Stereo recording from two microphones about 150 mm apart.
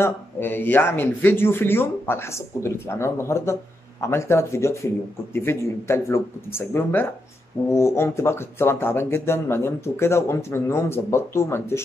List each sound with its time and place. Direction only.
0.0 s speech: 15° left (ahead or behind)